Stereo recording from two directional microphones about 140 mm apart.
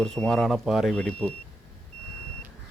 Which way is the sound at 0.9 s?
10° left (ahead or behind).